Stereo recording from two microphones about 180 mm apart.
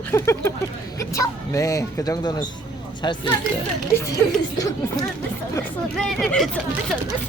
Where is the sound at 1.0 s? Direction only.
15° left (ahead or behind).